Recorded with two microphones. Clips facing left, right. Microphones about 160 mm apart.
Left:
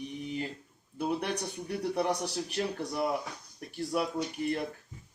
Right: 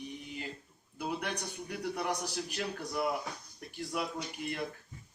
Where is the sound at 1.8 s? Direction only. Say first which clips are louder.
Left 5 dB; 30° left (ahead or behind).